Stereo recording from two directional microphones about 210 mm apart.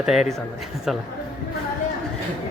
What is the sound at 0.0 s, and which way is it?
Speech, centre (ahead or behind).